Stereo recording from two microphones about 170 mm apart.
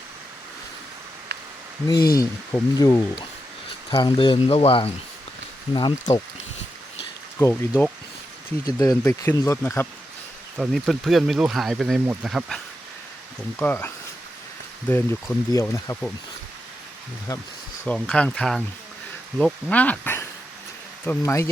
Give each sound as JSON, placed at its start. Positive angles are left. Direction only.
{"t": 1.3, "sound": "a sound", "side_deg": -90}
{"t": 1.9, "sound": "speech", "side_deg": 20}
{"t": 7.3, "sound": "speech", "side_deg": 10}
{"t": 8.6, "sound": "speech", "side_deg": 20}
{"t": 10.6, "sound": "speech", "side_deg": 0}
{"t": 13.6, "sound": "speech", "side_deg": 10}
{"t": 17.8, "sound": "speech", "side_deg": 5}